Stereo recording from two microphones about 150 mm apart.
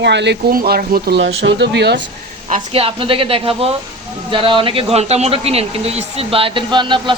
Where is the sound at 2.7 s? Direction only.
40° right (ahead or behind).